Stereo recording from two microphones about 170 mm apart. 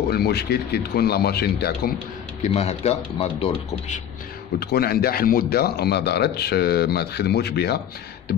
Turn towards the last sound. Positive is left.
turn(degrees=70)  # may be behind; listen again after turning